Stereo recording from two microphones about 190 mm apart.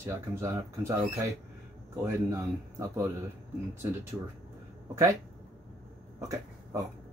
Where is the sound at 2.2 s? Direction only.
15° right (ahead or behind).